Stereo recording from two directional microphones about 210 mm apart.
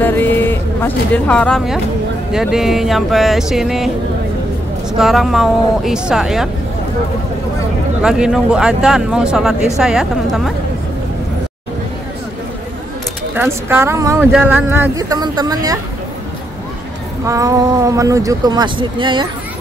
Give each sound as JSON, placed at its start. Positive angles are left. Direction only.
{"t": 0.0, "sound": "speech", "side_deg": 10}
{"t": 4.9, "sound": "speech", "side_deg": 0}
{"t": 8.0, "sound": "speech", "side_deg": 0}
{"t": 13.3, "sound": "speech", "side_deg": -10}
{"t": 17.3, "sound": "speech", "side_deg": -15}